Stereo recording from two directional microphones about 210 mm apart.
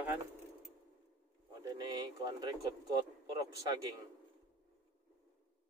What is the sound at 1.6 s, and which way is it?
Speech, 20° right (ahead or behind).